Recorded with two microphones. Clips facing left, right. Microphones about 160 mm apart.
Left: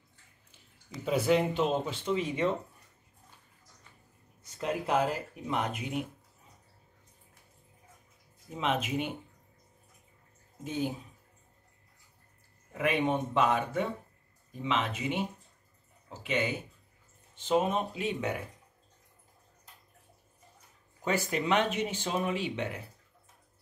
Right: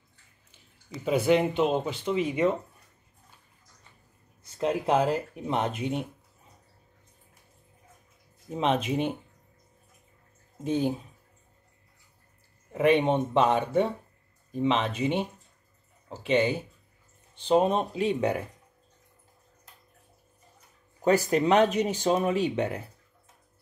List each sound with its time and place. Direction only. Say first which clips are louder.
1.0 s speech: right 4 dB; 5° right (ahead or behind)
4.6 s speech: right 5 dB; 25° right (ahead or behind)
8.5 s speech: right 5 dB; 35° right (ahead or behind)
10.6 s speech: right 7 dB; 35° right (ahead or behind)
12.7 s speech: right 7 dB; 30° right (ahead or behind)
16.1 s a sound: right 7 dB; 30° right (ahead or behind)
17.4 s speech: right 5 dB; 35° right (ahead or behind)
21.0 s speech: right 8 dB; 40° right (ahead or behind)